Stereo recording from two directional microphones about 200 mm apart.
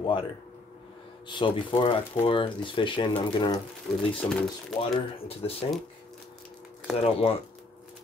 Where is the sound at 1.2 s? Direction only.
25° left (ahead or behind).